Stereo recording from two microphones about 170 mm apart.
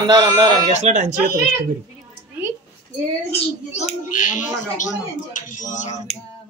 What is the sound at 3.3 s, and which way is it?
A child's voice, 40° left (ahead or behind).